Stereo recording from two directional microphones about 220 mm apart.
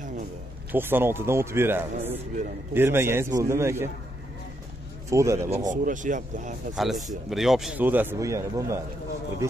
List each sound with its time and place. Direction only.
0.7 s a man's voice: 10° right (ahead or behind)
5.1 s a man's voice: 15° right (ahead or behind)
5.7 s speech: 35° right (ahead or behind)
6.7 s a man's voice: centre (ahead or behind)